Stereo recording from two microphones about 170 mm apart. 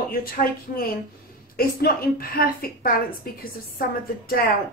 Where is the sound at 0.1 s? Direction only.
60° left (ahead or behind).